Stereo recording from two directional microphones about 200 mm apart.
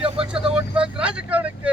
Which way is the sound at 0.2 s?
25° right (ahead or behind).